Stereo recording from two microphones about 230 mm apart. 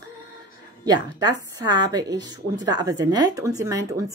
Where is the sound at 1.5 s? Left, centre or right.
Centre.